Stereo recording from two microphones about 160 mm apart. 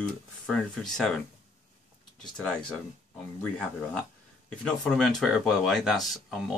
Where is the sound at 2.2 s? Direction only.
5° left (ahead or behind).